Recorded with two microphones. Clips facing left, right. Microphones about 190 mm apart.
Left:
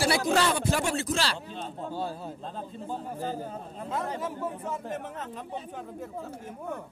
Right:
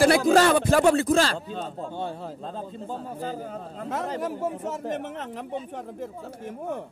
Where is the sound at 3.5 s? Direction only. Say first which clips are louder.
Right 3 dB; 85° right.